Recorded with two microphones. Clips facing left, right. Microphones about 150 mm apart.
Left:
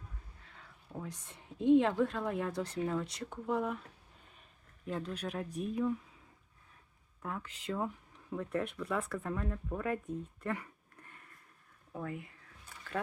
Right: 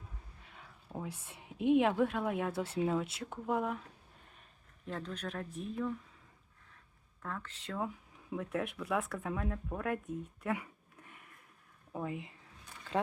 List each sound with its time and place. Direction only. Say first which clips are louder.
0.5 s a woman's voice: right 1 dB; 10° right (ahead or behind)
4.9 s speech: left 2 dB; 10° left (ahead or behind)
7.2 s speech: left 1 dB; 15° left (ahead or behind)
7.9 s speech: left 1 dB; 5° right (ahead or behind)
10.4 s a sound: right 1 dB; 10° right (ahead or behind)
11.9 s speech: right 2 dB; 20° right (ahead or behind)